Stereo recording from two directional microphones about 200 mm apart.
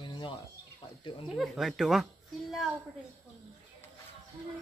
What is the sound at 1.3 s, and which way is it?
Speech, centre (ahead or behind).